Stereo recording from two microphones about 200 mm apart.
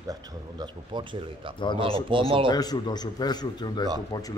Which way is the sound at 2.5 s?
20° left (ahead or behind).